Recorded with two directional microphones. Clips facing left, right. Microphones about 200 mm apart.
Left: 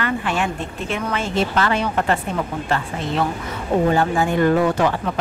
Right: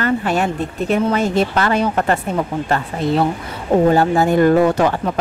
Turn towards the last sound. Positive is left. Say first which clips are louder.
# right 4 dB
turn(degrees=-40)  # may be behind; listen again after turning